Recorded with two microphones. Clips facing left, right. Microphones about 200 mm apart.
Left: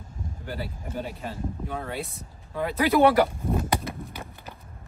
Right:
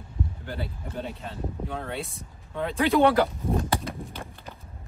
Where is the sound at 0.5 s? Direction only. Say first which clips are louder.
Left 1 dB; 5° left (ahead or behind).